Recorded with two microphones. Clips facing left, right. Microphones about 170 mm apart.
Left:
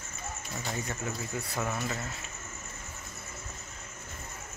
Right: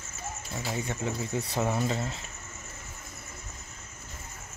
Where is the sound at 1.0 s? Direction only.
25° right (ahead or behind).